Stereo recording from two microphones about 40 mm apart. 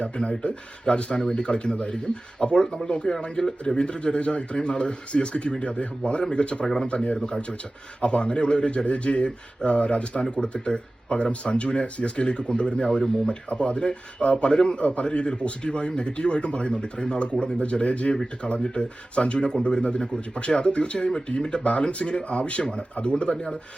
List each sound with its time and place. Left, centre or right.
0.0 s speech: left